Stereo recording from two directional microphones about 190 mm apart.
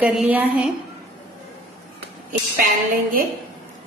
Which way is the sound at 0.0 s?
5° right (ahead or behind).